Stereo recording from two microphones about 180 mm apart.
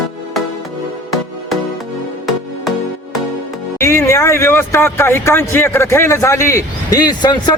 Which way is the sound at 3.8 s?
15° left (ahead or behind).